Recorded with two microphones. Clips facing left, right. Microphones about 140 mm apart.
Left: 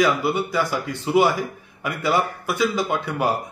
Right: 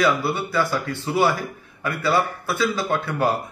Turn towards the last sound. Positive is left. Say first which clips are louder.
# even
turn(degrees=15)  # may be behind; listen again after turning